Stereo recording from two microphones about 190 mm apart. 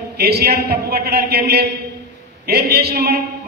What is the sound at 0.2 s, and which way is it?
A man's voice, 55° right (ahead or behind).